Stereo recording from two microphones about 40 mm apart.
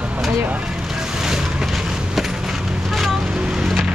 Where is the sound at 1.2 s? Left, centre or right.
Centre.